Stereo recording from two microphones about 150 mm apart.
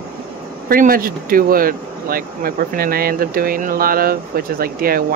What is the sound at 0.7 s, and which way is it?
Speech, 75° right (ahead or behind).